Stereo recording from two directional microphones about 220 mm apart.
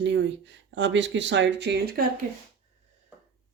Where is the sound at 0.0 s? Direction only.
55° right (ahead or behind).